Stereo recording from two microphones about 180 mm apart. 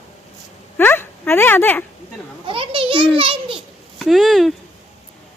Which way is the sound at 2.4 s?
30° right (ahead or behind).